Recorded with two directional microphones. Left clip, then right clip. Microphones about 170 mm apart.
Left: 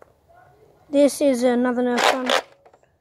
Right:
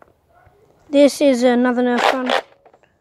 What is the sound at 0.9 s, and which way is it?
Speech, 25° right (ahead or behind).